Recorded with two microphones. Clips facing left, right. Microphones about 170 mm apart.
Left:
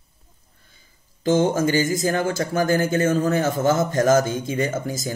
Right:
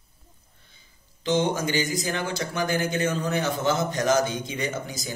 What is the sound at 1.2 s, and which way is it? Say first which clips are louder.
Speech: left 5 dB; 45° left (ahead or behind).